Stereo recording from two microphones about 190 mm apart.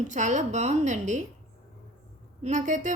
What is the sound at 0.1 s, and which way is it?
A woman's voice, 40° right (ahead or behind).